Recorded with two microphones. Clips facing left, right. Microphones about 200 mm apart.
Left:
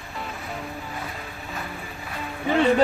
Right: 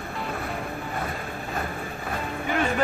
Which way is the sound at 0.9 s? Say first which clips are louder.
Right 4 dB; 55° right (ahead or behind).